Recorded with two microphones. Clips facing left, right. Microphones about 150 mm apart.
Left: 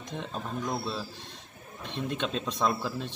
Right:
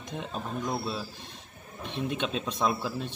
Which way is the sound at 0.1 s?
5° right (ahead or behind).